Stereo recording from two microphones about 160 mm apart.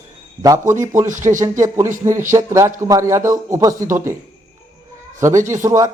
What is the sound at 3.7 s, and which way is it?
Speech, 55° right (ahead or behind).